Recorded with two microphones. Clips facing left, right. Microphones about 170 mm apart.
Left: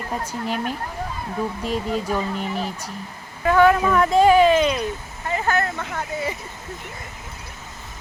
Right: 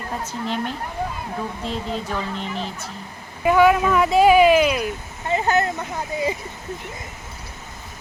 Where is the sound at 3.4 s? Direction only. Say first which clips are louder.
Even; 10° right (ahead or behind).